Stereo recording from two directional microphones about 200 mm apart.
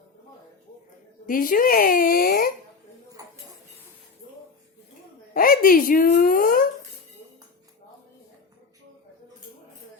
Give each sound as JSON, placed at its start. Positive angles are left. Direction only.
{"t": 1.3, "sound": "speech", "side_deg": 45}
{"t": 3.2, "sound": "dishes", "side_deg": -15}
{"t": 5.3, "sound": "speech", "side_deg": 45}